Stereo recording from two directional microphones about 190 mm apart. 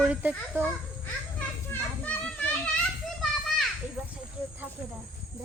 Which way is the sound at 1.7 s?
5° left (ahead or behind).